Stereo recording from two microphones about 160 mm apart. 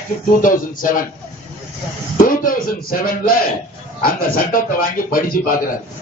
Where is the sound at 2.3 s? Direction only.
60° left (ahead or behind).